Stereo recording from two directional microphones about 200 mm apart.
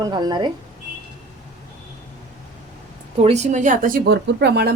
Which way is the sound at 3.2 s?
35° right (ahead or behind).